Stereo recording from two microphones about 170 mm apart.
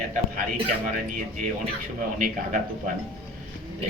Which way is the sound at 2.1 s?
50° right (ahead or behind).